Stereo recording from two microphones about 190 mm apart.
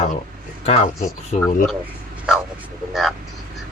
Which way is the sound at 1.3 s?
40° left (ahead or behind).